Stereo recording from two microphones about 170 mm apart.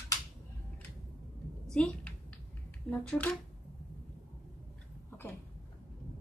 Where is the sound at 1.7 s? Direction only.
5° left (ahead or behind).